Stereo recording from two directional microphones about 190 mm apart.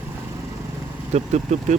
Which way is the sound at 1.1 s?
35° right (ahead or behind).